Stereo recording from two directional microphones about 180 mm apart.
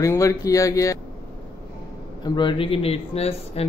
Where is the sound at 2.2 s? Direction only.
25° left (ahead or behind).